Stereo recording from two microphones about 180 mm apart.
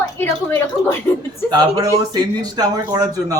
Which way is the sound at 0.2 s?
15° left (ahead or behind).